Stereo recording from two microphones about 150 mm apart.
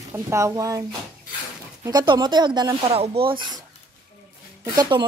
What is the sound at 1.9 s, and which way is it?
Speech, 25° right (ahead or behind).